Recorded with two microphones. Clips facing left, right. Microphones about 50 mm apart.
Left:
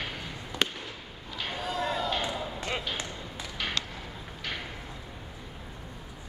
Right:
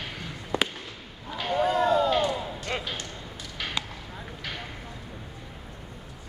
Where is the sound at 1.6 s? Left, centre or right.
Right.